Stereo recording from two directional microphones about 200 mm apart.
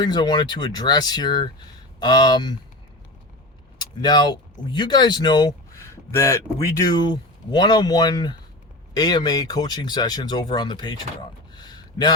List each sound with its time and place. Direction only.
0.0 s speech: 20° left (ahead or behind)
3.8 s vehicle: 20° left (ahead or behind)
4.7 s speech: 20° left (ahead or behind)